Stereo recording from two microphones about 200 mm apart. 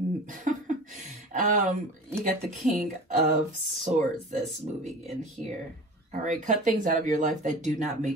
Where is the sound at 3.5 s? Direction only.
35° right (ahead or behind).